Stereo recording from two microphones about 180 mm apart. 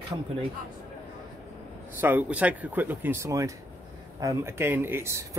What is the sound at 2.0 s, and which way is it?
Speech, 10° right (ahead or behind).